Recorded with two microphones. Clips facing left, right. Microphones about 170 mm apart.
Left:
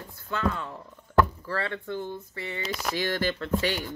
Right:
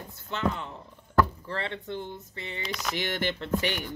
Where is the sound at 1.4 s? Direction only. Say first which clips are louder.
Left 2 dB; 20° right (ahead or behind).